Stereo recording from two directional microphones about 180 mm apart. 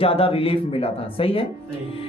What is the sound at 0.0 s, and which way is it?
Speech, 30° left (ahead or behind).